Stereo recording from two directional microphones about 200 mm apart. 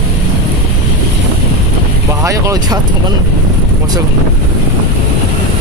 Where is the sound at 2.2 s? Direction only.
15° right (ahead or behind).